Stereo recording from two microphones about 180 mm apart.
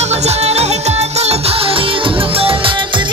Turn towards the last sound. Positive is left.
turn(degrees=-25)  # may be behind; listen again after turning